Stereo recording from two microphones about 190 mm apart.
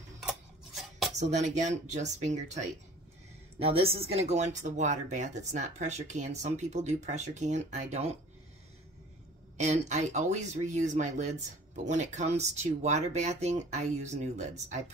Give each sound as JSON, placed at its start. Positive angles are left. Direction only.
{"t": 0.3, "sound": "cutlery", "side_deg": 0}
{"t": 1.1, "sound": "speech", "side_deg": -40}
{"t": 9.6, "sound": "speech", "side_deg": -35}